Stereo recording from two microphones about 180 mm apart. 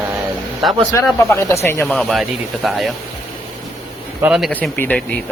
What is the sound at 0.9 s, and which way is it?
Speech, 15° left (ahead or behind).